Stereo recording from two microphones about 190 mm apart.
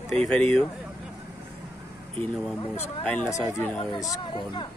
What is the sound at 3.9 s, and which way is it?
Speech, 20° left (ahead or behind).